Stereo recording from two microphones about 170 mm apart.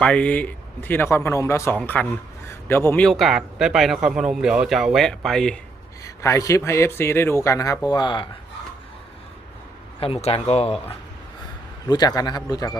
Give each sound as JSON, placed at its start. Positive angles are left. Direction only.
{"t": 0.0, "sound": "a man's voice", "side_deg": 5}
{"t": 3.1, "sound": "speech", "side_deg": 0}
{"t": 6.2, "sound": "a man's voice", "side_deg": 20}
{"t": 10.0, "sound": "speech", "side_deg": 35}
{"t": 11.9, "sound": "a man's voice", "side_deg": 25}